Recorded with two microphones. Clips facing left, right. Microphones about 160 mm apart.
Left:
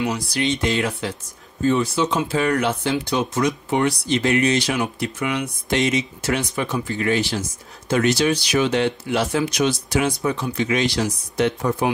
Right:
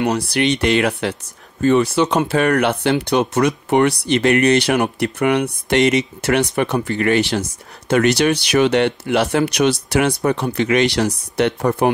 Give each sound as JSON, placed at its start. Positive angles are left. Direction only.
{"t": 0.3, "sound": "speech", "side_deg": -70}